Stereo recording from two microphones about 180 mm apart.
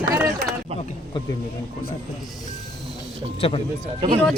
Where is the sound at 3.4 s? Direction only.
30° left (ahead or behind).